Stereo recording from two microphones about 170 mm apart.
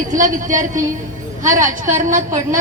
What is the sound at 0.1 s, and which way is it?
A woman's voice, 50° right (ahead or behind).